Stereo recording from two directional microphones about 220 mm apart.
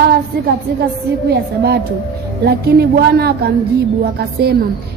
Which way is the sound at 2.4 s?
45° right (ahead or behind).